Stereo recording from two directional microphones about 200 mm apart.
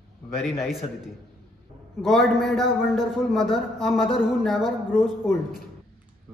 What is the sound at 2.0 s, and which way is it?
A man's voice, centre (ahead or behind).